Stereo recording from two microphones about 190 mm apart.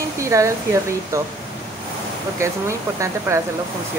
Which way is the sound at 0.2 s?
15° right (ahead or behind).